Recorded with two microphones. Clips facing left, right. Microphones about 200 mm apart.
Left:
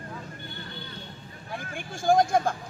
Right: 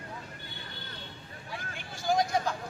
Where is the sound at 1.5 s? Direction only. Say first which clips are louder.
Left 6 dB; 50° left (ahead or behind).